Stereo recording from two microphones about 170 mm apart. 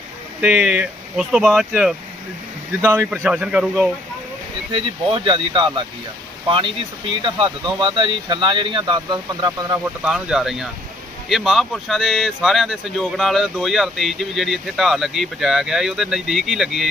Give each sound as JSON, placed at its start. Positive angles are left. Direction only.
{"t": 0.4, "sound": "speech", "side_deg": -5}
{"t": 2.8, "sound": "speech", "side_deg": -15}
{"t": 5.2, "sound": "speech", "side_deg": -30}
{"t": 7.3, "sound": "speech", "side_deg": -30}
{"t": 9.8, "sound": "speech", "side_deg": -5}